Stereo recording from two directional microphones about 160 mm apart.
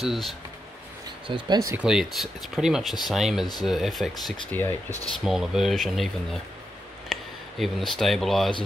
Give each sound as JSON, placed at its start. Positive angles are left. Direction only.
{"t": 0.0, "sound": "speech", "side_deg": 0}
{"t": 1.2, "sound": "speech", "side_deg": -30}
{"t": 1.8, "sound": "speech", "side_deg": -5}
{"t": 4.5, "sound": "speech", "side_deg": 10}
{"t": 5.2, "sound": "speech", "side_deg": -5}